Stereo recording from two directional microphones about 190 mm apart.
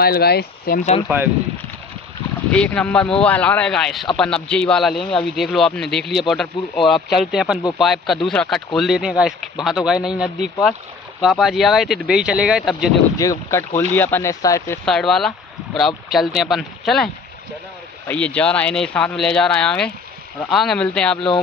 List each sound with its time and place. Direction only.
0.0 s speech: 55° left (ahead or behind)
1.0 s speech: 10° right (ahead or behind)
2.5 s speech: 5° left (ahead or behind)
13.2 s speech: 15° left (ahead or behind)
14.9 s speech: centre (ahead or behind)